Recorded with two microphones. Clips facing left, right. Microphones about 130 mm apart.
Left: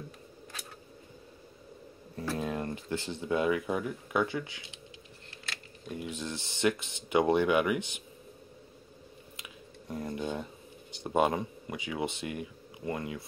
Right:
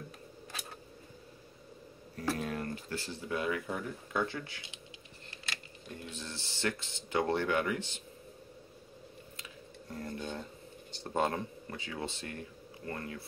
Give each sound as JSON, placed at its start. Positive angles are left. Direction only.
{"t": 2.1, "sound": "speech", "side_deg": 25}
{"t": 5.9, "sound": "speech", "side_deg": 15}
{"t": 9.4, "sound": "a sound", "side_deg": 15}
{"t": 10.9, "sound": "speech", "side_deg": 15}